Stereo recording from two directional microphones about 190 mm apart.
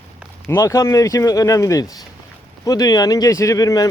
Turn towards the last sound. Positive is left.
turn(degrees=20)  # may be behind; listen again after turning